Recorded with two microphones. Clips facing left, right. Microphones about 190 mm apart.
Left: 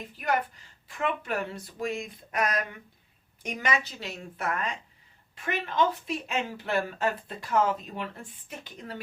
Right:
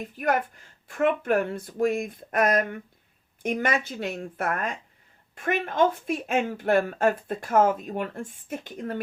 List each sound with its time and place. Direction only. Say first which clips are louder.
0.0 s a woman's voice: right 3 dB; 50° right (ahead or behind)